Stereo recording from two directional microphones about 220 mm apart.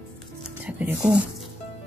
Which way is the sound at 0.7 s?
5° right (ahead or behind).